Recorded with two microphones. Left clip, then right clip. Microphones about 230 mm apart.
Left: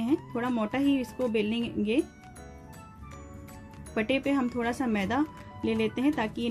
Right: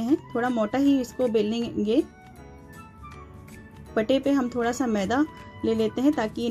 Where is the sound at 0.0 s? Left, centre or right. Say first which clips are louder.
Right 5 dB; centre.